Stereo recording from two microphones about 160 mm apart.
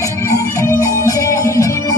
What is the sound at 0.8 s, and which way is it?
Music, 20° left (ahead or behind).